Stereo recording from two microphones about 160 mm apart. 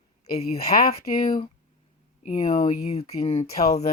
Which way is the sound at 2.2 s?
45° left (ahead or behind).